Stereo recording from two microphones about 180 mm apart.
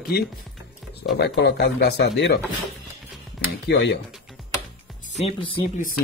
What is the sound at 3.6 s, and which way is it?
Speech, 65° left (ahead or behind).